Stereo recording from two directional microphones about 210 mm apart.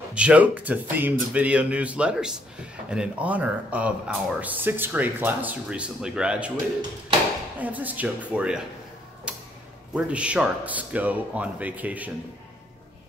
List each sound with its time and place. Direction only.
0.1 s speech: 5° right (ahead or behind)
7.6 s speech: 10° right (ahead or behind)
9.9 s speech: 5° right (ahead or behind)